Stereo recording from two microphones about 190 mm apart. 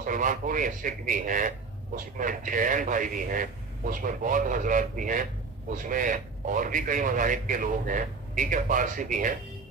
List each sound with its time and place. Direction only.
0.0 s a man's voice: 45° right (ahead or behind)